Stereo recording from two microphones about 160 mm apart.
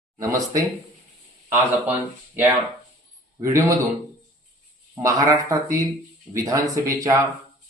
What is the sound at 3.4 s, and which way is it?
Speech, 20° right (ahead or behind).